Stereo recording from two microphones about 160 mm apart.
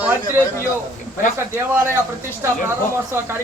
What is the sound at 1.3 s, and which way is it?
Speech, 15° right (ahead or behind).